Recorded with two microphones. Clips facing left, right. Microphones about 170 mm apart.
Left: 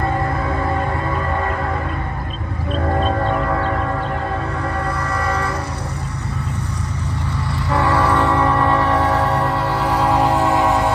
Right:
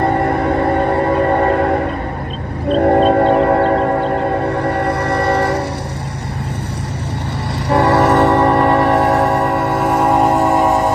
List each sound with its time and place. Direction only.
0.1 s music: 65° right (ahead or behind)
0.8 s music: 40° right (ahead or behind)
4.6 s train: 70° right (ahead or behind)
7.7 s train: 70° right (ahead or behind)
9.9 s music: 45° right (ahead or behind)